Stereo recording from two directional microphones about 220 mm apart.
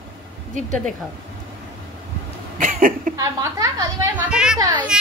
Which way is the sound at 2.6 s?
40° right (ahead or behind).